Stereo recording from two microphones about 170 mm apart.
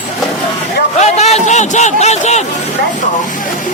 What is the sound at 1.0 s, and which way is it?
A man's voice, 40° left (ahead or behind).